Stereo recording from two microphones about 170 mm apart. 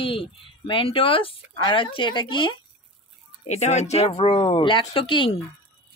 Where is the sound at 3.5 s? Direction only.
40° left (ahead or behind).